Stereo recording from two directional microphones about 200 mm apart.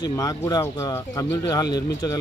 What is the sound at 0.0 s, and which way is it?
Speech, 20° left (ahead or behind).